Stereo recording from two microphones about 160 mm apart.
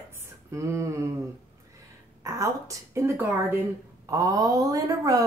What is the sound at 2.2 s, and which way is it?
Speech, 20° right (ahead or behind).